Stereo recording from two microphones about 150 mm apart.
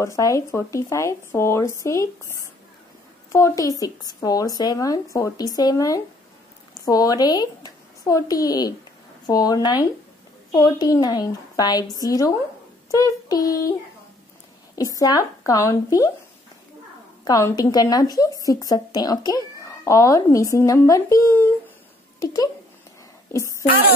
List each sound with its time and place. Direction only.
0.0 s speech: 20° left (ahead or behind)
3.3 s a woman's voice: 20° left (ahead or behind)
15.0 s speech: 25° left (ahead or behind)
17.2 s speech: 20° left (ahead or behind)